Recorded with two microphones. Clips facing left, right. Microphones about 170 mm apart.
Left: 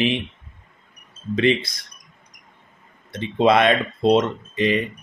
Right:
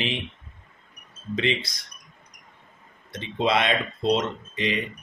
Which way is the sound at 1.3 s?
55° left (ahead or behind).